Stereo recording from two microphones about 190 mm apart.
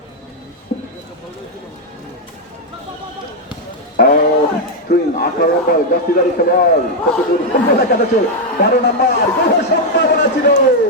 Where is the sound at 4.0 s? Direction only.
50° left (ahead or behind).